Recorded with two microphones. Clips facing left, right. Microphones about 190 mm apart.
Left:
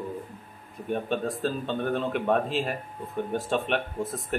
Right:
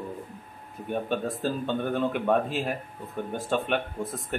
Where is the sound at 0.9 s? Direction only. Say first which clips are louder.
Left 1 dB; 5° right (ahead or behind).